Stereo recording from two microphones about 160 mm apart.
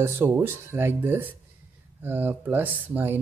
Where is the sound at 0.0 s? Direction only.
15° right (ahead or behind).